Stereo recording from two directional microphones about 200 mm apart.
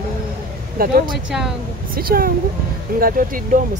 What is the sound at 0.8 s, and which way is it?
Speech, 45° right (ahead or behind).